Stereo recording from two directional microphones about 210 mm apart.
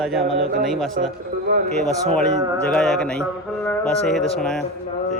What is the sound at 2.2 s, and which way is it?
A man's voice, 5° left (ahead or behind).